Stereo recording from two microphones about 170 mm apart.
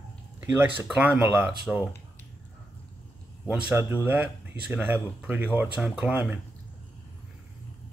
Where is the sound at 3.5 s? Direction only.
10° right (ahead or behind).